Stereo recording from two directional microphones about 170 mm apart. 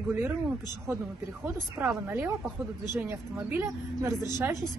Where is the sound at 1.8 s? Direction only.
10° right (ahead or behind).